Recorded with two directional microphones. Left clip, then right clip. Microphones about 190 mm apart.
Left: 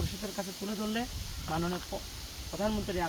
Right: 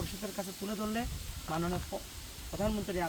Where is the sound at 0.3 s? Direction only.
5° left (ahead or behind).